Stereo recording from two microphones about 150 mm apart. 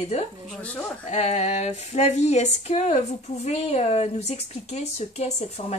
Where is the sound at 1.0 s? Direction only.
45° left (ahead or behind).